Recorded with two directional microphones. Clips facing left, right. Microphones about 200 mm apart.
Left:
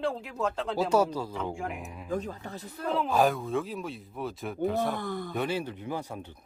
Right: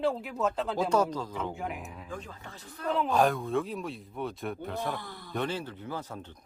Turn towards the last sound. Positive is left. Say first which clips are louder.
# left 3 dB
turn(degrees=15)  # may be behind; listen again after turning